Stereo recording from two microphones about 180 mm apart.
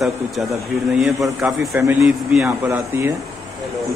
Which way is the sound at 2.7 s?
15° right (ahead or behind).